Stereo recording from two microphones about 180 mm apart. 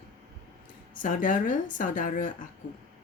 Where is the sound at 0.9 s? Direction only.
45° left (ahead or behind).